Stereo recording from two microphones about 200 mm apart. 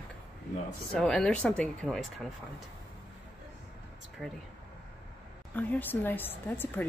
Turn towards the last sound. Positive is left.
turn(degrees=10)  # may be behind; listen again after turning